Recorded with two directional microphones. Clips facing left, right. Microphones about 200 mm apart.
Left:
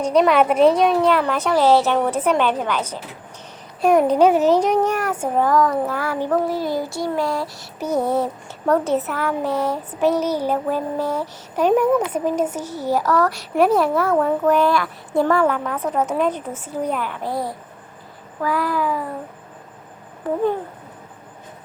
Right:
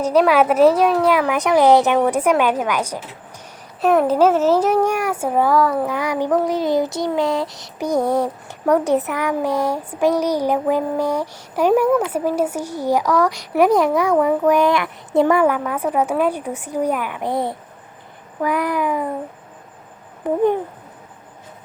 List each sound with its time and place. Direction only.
0.0 s child singing: 5° right (ahead or behind)
3.8 s a child's voice: centre (ahead or behind)
4.6 s child singing: 10° right (ahead or behind)
20.2 s speech: 20° right (ahead or behind)